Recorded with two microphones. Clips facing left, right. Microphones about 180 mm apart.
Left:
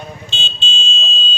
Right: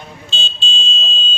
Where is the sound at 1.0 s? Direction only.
40° right (ahead or behind).